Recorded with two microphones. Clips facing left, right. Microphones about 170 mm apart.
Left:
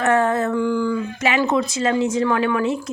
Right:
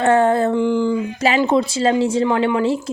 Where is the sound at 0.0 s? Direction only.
30° right (ahead or behind).